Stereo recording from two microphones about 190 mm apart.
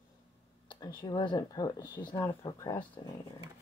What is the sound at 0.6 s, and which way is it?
Speech, 20° left (ahead or behind).